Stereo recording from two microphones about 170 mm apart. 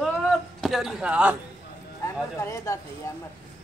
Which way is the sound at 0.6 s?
Centre (ahead or behind).